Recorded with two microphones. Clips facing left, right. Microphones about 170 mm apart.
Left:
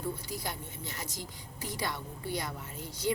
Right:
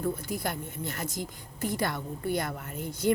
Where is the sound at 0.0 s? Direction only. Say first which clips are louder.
Right 6 dB; 55° right (ahead or behind).